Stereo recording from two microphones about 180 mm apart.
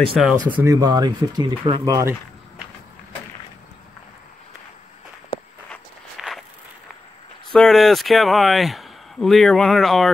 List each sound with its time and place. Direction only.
0.1 s speech: 5° right (ahead or behind)
0.5 s speech: 20° right (ahead or behind)
5.7 s walk: centre (ahead or behind)
7.5 s speech: centre (ahead or behind)